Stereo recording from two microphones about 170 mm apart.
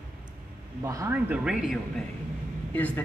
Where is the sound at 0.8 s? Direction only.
15° right (ahead or behind).